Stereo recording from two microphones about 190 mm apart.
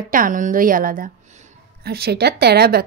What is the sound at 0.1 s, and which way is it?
A woman's voice, 45° right (ahead or behind).